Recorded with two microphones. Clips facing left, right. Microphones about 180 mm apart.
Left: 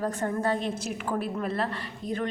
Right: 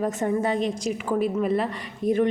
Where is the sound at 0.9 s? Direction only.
5° right (ahead or behind).